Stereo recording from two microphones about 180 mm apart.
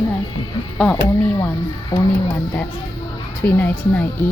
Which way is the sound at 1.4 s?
20° left (ahead or behind).